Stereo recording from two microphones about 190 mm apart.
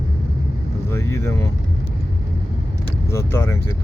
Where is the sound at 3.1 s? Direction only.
15° left (ahead or behind).